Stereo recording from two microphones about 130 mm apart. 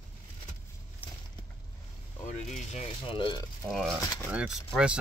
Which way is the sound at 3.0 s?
40° left (ahead or behind).